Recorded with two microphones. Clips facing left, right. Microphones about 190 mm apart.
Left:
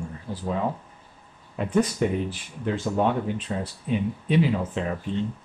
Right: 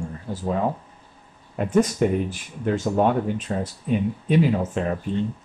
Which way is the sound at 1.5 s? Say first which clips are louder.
Right 3 dB; 45° right (ahead or behind).